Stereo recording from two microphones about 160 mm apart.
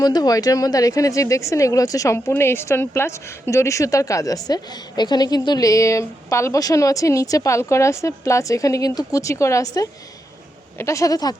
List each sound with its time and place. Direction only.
0.0 s speech: 25° left (ahead or behind)